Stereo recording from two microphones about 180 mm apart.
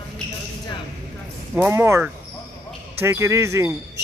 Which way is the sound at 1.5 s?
10° right (ahead or behind).